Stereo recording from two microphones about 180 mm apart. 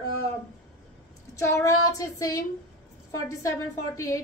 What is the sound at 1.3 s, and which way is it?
A woman's voice, 15° left (ahead or behind).